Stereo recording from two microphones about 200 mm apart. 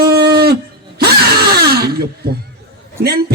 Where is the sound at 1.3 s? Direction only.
50° right (ahead or behind).